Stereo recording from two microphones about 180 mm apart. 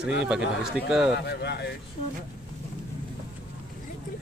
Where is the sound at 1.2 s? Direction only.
70° left (ahead or behind).